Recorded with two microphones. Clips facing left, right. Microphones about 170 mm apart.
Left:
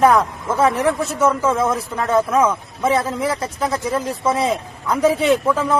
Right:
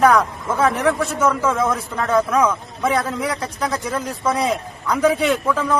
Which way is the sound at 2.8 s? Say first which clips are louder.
Left 2 dB; 25° left (ahead or behind).